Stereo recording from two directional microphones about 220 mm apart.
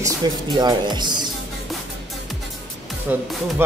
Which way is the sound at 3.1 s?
5° right (ahead or behind).